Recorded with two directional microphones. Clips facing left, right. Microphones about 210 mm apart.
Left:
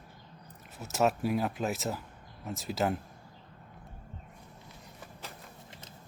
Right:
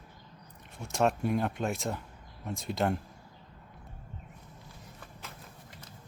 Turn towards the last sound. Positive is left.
turn(degrees=20)  # may be behind; listen again after turning